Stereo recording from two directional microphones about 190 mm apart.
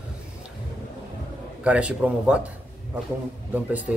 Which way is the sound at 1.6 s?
5° right (ahead or behind).